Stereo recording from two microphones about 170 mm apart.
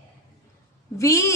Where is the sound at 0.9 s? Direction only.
20° left (ahead or behind).